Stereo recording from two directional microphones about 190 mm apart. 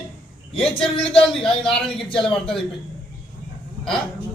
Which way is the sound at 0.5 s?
Centre (ahead or behind).